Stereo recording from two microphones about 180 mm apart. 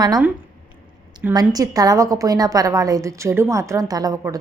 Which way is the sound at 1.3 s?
20° right (ahead or behind).